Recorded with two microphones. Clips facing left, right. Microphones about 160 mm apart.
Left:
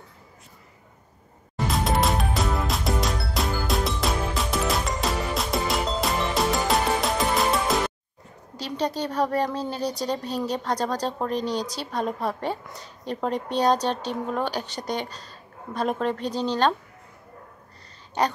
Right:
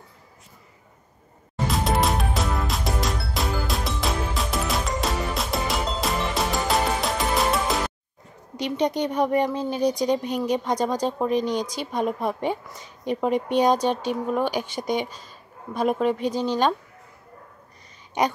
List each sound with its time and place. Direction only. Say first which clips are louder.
1.7 s music: right 1 dB; centre (ahead or behind)
8.5 s speech: right 4 dB; 20° right (ahead or behind)
18.2 s speech: right 1 dB; 15° right (ahead or behind)